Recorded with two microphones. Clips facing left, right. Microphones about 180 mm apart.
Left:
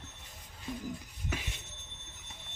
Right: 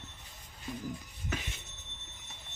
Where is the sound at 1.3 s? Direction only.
10° left (ahead or behind).